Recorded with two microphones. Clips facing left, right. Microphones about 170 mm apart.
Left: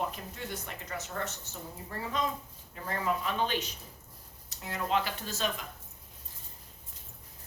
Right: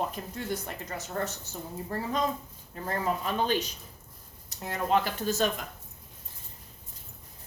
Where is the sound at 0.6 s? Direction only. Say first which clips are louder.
Right 3 dB; 40° right (ahead or behind).